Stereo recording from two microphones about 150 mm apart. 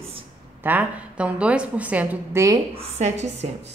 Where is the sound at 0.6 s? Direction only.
10° right (ahead or behind).